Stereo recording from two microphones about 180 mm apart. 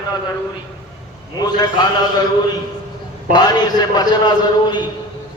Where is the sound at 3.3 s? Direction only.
25° left (ahead or behind).